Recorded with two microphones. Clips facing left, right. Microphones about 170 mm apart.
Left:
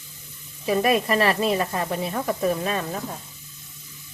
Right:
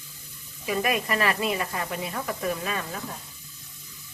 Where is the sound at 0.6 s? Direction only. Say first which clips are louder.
Left 6 dB; 35° left (ahead or behind).